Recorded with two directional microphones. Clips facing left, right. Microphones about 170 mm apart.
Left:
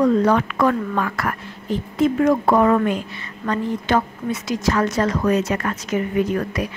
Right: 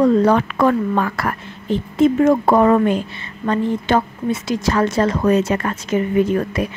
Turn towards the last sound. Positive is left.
turn(degrees=-25)  # may be behind; listen again after turning